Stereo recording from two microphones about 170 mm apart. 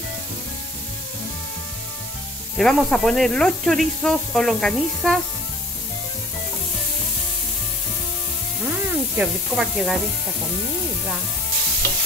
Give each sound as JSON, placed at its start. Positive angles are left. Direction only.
{"t": 2.5, "sound": "speech", "side_deg": 5}
{"t": 8.6, "sound": "hiss", "side_deg": -5}